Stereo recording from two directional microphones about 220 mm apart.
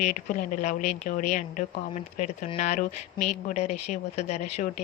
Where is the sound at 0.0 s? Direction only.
35° left (ahead or behind).